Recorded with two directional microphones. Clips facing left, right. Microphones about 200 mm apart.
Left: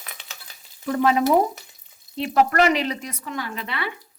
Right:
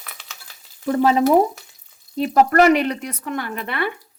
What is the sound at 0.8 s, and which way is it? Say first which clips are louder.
Frying: right 3 dB; 30° right (ahead or behind).